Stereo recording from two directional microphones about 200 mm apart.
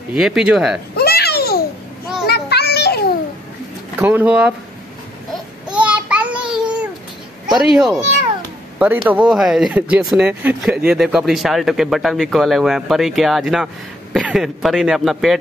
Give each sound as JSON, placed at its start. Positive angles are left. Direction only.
{"t": 0.1, "sound": "speech", "side_deg": -5}
{"t": 0.9, "sound": "a sound", "side_deg": 50}
{"t": 2.2, "sound": "children playing", "side_deg": 50}
{"t": 4.0, "sound": "speech", "side_deg": -10}
{"t": 5.3, "sound": "babbling", "side_deg": -5}
{"t": 7.4, "sound": "speech", "side_deg": 0}